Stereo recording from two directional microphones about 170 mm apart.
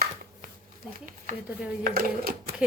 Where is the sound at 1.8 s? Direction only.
60° right (ahead or behind).